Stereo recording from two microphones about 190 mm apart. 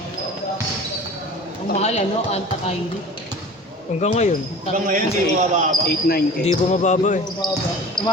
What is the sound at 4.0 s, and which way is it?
Speech, 40° left (ahead or behind).